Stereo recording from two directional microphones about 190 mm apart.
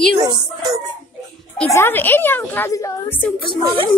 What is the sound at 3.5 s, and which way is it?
Speech, 25° right (ahead or behind).